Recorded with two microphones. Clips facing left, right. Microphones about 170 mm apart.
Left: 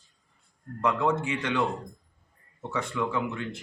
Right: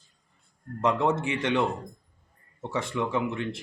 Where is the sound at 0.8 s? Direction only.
25° right (ahead or behind).